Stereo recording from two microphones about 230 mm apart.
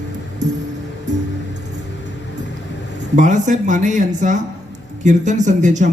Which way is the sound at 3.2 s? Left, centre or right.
Right.